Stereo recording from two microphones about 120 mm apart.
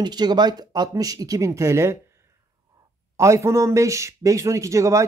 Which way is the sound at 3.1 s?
25° right (ahead or behind).